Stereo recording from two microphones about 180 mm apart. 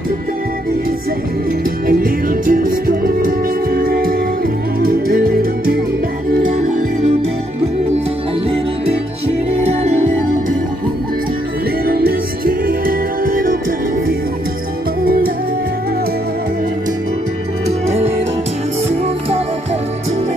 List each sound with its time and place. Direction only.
1.9 s music: 50° right (ahead or behind)
6.5 s music: 45° right (ahead or behind)
9.7 s music: 35° right (ahead or behind)
11.8 s music: 55° right (ahead or behind)
15.0 s music: 55° right (ahead or behind)
17.6 s music: 35° right (ahead or behind)